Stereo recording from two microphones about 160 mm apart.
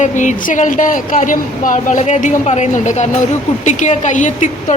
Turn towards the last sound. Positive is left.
turn(degrees=50)  # may be behind; listen again after turning